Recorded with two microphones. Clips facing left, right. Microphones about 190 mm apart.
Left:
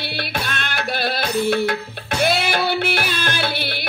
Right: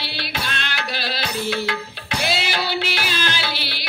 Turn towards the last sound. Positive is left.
turn(degrees=55)  # may be behind; listen again after turning